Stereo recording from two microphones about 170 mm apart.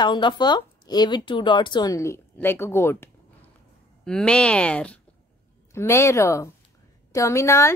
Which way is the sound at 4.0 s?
5° left (ahead or behind).